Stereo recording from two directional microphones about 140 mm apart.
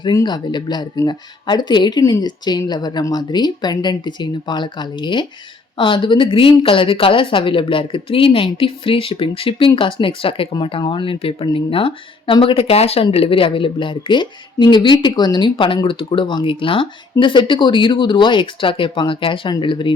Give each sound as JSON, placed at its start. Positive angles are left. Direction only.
{"t": 0.0, "sound": "speech", "side_deg": 30}